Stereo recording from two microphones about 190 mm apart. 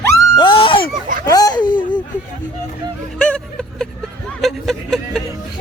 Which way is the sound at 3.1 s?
5° left (ahead or behind).